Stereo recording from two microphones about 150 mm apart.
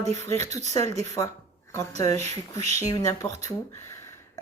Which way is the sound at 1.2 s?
25° left (ahead or behind).